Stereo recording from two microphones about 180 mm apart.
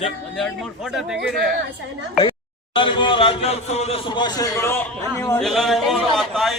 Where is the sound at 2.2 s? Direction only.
25° left (ahead or behind).